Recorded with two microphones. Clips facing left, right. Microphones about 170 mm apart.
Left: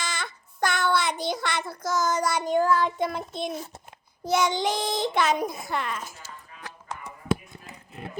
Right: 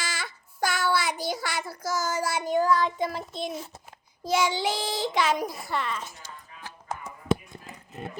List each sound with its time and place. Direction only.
0.0 s child singing: 5° right (ahead or behind)
2.6 s a sound: 45° left (ahead or behind)
3.0 s a child's voice: centre (ahead or behind)
5.6 s speech: 45° left (ahead or behind)